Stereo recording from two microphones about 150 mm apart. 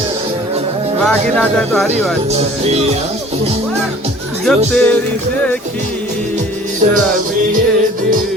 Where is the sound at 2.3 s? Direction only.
45° right (ahead or behind).